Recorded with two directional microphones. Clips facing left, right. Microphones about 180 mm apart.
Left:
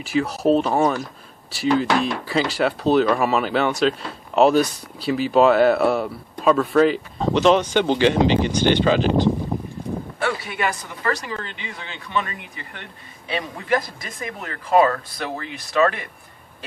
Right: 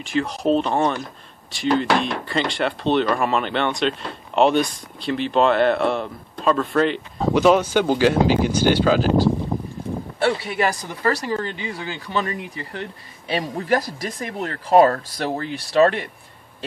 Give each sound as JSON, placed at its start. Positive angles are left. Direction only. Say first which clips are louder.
{"t": 0.0, "sound": "speech", "louder": "left 2 dB", "side_deg": 5}
{"t": 10.1, "sound": "speech", "louder": "right 6 dB", "side_deg": -30}